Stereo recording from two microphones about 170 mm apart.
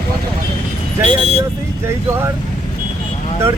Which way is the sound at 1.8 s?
15° right (ahead or behind).